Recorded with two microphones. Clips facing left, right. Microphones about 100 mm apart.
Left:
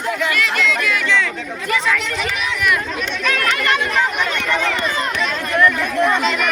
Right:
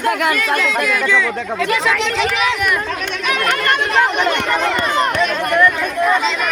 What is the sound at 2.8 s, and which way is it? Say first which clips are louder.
Chatter: right 1 dB; 70° right (ahead or behind).